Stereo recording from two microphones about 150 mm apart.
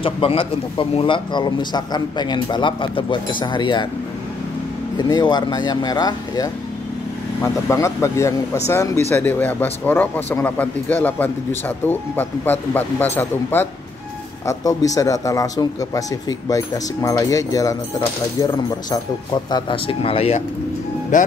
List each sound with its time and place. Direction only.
0.0 s speech: 35° left (ahead or behind)
4.9 s a man's voice: 30° left (ahead or behind)
21.1 s speech: 55° left (ahead or behind)